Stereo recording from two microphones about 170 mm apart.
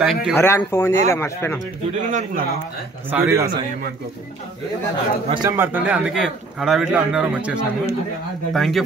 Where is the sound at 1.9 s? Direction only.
50° right (ahead or behind).